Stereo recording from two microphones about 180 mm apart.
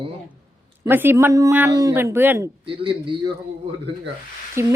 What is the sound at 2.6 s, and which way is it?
Speech, 30° right (ahead or behind).